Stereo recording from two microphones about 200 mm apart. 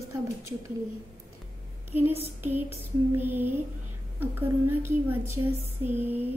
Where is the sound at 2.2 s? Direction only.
10° right (ahead or behind).